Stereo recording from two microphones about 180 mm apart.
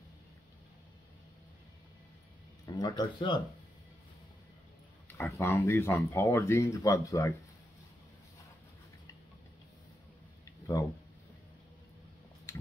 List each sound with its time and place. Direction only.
2.6 s speech: 20° left (ahead or behind)
5.1 s speech: 15° left (ahead or behind)